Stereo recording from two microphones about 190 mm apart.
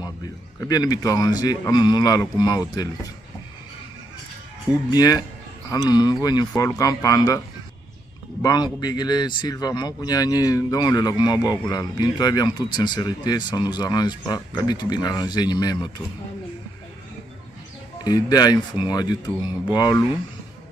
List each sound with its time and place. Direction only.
0.6 s speech: 20° left (ahead or behind)
4.9 s a man's voice: 20° left (ahead or behind)
18.0 s speech: 20° left (ahead or behind)